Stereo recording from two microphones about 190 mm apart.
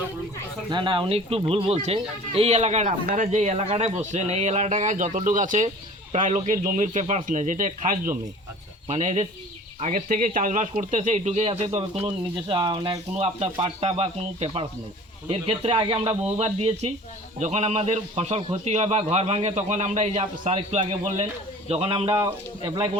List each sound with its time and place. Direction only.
0.7 s speech: 25° right (ahead or behind)